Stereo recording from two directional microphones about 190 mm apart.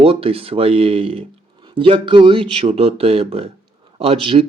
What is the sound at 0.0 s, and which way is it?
Speech, 30° right (ahead or behind).